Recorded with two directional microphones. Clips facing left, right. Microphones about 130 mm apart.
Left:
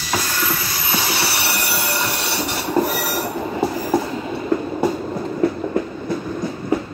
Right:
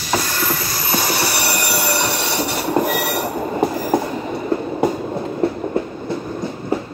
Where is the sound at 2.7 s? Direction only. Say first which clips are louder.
Even; 55° right (ahead or behind).